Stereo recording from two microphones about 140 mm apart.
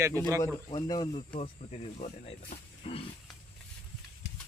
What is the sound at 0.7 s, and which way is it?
Speech, 30° left (ahead or behind).